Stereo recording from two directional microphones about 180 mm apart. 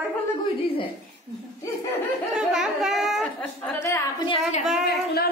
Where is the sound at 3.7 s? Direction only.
15° left (ahead or behind).